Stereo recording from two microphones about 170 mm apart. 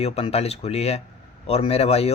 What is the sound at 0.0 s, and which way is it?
A man's voice, 35° left (ahead or behind).